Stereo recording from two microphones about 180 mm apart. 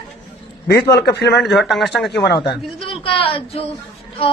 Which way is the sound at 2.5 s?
30° left (ahead or behind).